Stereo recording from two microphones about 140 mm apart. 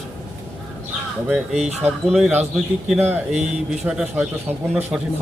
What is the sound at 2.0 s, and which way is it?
A man's voice, 5° right (ahead or behind).